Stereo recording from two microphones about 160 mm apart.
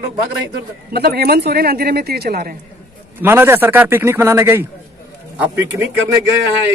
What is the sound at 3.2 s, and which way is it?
A man's voice, 15° right (ahead or behind).